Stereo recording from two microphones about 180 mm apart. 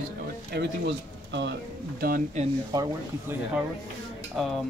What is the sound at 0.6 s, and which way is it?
Speech, 80° right.